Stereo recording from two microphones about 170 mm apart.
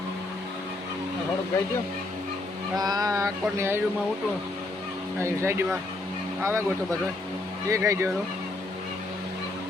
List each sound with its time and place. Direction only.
2.7 s a sound: 25° right (ahead or behind)
5.2 s speech: 15° right (ahead or behind)
7.7 s speech: 15° right (ahead or behind)